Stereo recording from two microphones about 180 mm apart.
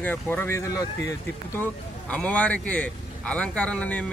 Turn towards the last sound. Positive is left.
turn(degrees=5)  # may be behind; listen again after turning